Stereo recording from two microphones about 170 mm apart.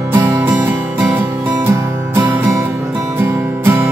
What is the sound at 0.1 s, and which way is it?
Music, 20° right (ahead or behind).